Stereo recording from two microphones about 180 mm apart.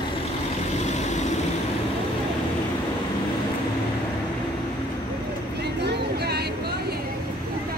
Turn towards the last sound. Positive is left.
turn(degrees=-65)  # may be behind; listen again after turning